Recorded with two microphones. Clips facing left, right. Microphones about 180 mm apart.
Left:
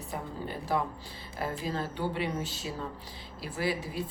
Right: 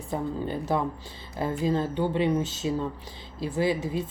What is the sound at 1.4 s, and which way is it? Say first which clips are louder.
Speech: right 7 dB; 25° right (ahead or behind).